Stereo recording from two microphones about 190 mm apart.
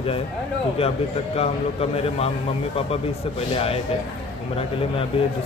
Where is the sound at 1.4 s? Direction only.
35° left (ahead or behind).